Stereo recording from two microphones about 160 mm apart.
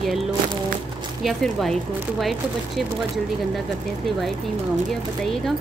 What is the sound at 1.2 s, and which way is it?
Speech, centre (ahead or behind).